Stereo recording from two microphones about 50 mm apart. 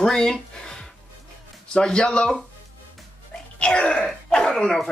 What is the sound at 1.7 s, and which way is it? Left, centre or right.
Speech, centre.